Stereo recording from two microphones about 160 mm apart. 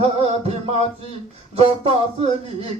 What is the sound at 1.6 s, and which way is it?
Music, 40° right (ahead or behind).